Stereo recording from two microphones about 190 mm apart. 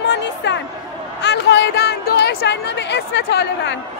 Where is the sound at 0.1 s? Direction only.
65° left (ahead or behind).